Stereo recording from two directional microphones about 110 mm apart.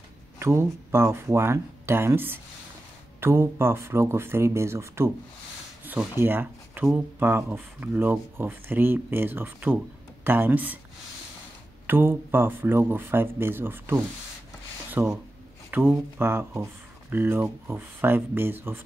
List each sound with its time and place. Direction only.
0.4 s speech: 25° right (ahead or behind)
6.1 s speech: 20° right (ahead or behind)
11.9 s speech: 20° right (ahead or behind)